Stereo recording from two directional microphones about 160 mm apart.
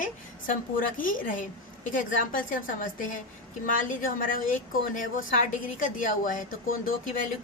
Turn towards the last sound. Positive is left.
turn(degrees=55)  # may be behind; listen again after turning